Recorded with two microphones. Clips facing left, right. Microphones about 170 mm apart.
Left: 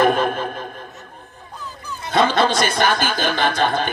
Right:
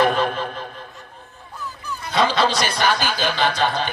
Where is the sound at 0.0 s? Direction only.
50° left (ahead or behind).